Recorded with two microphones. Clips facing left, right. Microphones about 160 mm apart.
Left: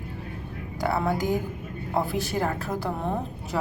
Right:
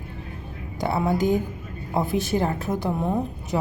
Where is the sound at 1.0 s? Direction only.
25° right (ahead or behind).